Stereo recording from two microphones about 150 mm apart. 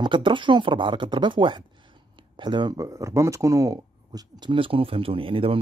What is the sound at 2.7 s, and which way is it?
Speech, 20° right (ahead or behind).